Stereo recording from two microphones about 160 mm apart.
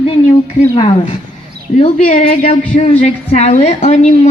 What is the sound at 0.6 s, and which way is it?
Speech, 35° left (ahead or behind).